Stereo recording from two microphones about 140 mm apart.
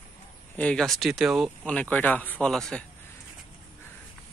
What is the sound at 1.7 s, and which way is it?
A man's voice, 10° left (ahead or behind).